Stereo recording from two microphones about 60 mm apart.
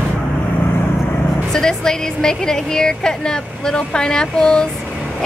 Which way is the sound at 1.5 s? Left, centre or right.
Centre.